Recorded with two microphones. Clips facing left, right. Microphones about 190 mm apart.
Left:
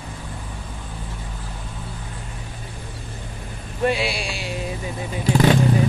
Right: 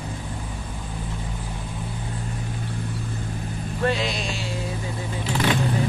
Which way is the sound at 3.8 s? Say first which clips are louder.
Left 3 dB; 10° left (ahead or behind).